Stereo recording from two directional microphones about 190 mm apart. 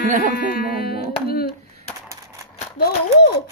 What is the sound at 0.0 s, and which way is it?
Speech, 40° right (ahead or behind).